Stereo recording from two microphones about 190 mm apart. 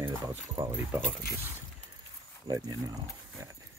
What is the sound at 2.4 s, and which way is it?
Speech, 20° right (ahead or behind).